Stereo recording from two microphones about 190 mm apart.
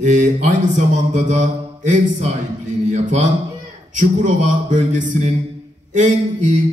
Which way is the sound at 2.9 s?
40° right (ahead or behind).